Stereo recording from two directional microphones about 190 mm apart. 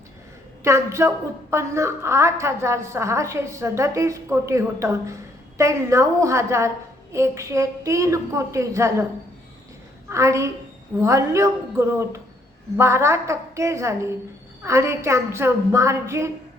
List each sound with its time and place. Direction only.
0.6 s a woman's voice: 15° right (ahead or behind)
10.1 s a woman's voice: 15° right (ahead or behind)